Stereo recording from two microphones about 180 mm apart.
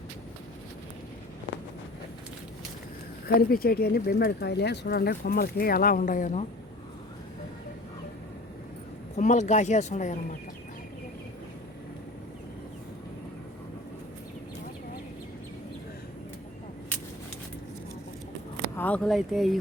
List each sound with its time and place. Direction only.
3.2 s speech: 55° left (ahead or behind)
9.1 s speech: 40° left (ahead or behind)
18.8 s speech: 5° left (ahead or behind)